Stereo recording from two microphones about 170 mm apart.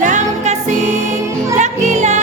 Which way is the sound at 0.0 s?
45° right (ahead or behind).